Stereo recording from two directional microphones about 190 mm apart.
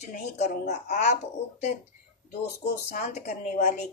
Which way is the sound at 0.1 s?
35° left (ahead or behind).